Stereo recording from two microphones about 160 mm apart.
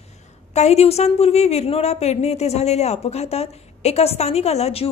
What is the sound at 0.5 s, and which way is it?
A woman's voice, 40° left (ahead or behind).